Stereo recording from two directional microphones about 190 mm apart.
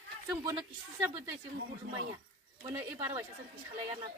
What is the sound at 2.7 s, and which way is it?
Speech, 10° right (ahead or behind).